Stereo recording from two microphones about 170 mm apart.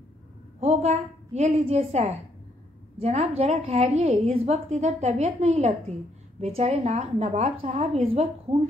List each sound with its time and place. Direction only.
0.6 s a woman's voice: 40° right (ahead or behind)